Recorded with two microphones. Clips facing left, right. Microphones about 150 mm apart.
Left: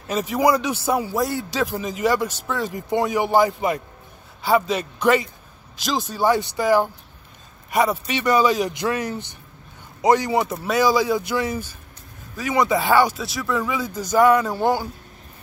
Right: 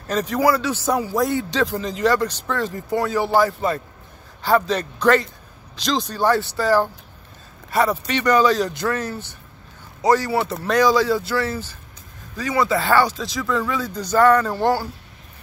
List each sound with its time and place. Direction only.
0.0 s speech: 10° left (ahead or behind)